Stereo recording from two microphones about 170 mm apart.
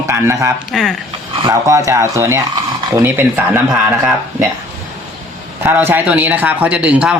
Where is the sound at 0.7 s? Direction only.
Centre (ahead or behind).